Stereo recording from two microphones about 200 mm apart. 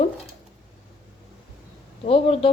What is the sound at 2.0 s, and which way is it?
Speech, 30° left (ahead or behind).